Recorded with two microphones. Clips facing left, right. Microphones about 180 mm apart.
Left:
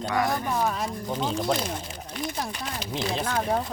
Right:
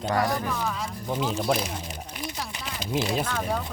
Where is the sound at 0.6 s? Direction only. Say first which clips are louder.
Left 4 dB; 50° left (ahead or behind).